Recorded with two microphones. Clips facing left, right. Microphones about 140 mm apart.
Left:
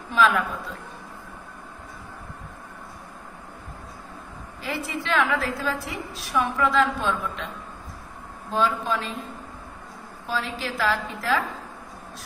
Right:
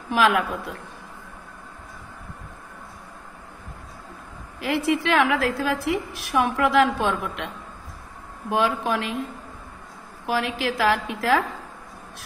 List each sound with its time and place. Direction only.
0.1 s a woman's voice: 65° right (ahead or behind)
4.6 s a woman's voice: 65° right (ahead or behind)
8.6 s a woman's voice: 70° right (ahead or behind)
10.2 s a woman's voice: 70° right (ahead or behind)